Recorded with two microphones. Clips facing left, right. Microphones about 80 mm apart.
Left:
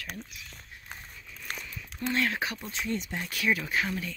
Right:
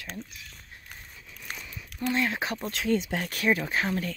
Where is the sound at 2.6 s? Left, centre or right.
Right.